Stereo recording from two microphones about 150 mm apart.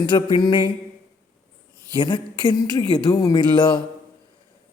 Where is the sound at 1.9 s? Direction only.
30° left (ahead or behind).